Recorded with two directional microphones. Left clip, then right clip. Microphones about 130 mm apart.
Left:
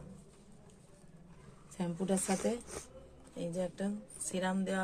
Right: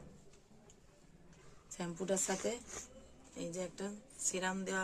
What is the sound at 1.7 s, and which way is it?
Speech, 30° right (ahead or behind).